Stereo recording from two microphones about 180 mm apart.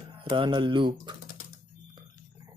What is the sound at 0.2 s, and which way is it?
Speech, 25° right (ahead or behind).